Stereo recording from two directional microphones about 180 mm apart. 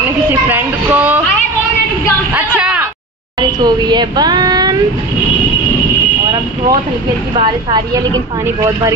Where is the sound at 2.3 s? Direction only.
10° right (ahead or behind).